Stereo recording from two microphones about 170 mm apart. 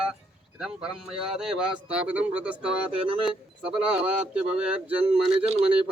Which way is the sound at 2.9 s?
35° right (ahead or behind).